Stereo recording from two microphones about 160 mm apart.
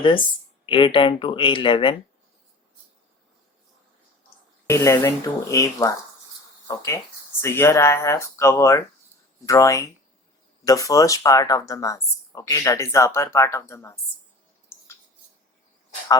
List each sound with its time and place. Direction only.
0.6 s speech: 30° left (ahead or behind)
4.6 s speech: 20° left (ahead or behind)